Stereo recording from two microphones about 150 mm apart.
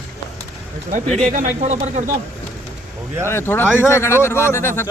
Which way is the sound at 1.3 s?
60° right (ahead or behind).